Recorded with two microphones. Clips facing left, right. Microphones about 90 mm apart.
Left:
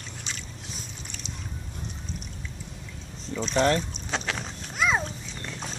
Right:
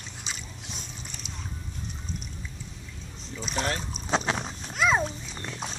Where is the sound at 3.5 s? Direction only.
40° left (ahead or behind).